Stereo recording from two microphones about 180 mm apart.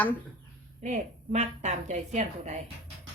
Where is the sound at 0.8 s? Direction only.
40° right (ahead or behind).